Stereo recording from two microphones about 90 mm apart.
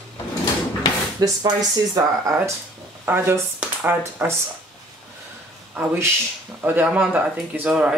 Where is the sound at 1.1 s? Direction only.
45° right (ahead or behind).